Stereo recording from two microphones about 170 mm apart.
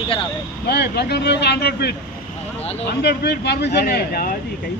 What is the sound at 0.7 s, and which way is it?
Speech, 70° left (ahead or behind).